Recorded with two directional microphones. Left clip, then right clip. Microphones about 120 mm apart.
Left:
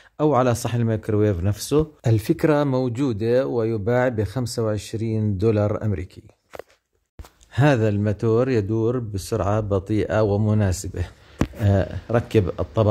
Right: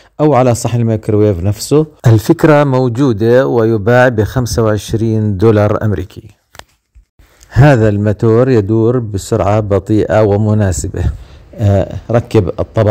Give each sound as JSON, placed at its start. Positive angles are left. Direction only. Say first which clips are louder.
{"t": 0.2, "sound": "speech", "louder": "right 9 dB", "side_deg": -40}
{"t": 7.5, "sound": "speech", "louder": "right 10 dB", "side_deg": -40}